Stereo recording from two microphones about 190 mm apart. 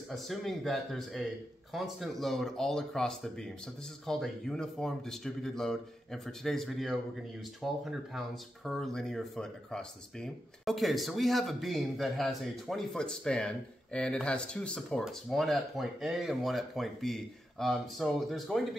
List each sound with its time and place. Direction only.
0.1 s speech: centre (ahead or behind)